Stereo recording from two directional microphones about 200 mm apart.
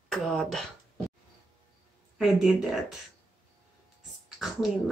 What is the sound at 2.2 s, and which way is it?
Speech, 5° right (ahead or behind).